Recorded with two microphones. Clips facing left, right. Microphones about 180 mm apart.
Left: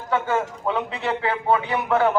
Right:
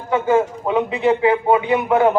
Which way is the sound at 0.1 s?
15° right (ahead or behind).